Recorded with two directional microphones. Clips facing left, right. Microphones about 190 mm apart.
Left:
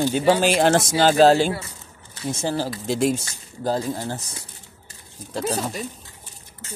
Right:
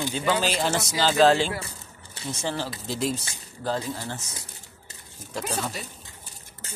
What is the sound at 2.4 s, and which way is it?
Speech, 40° left (ahead or behind).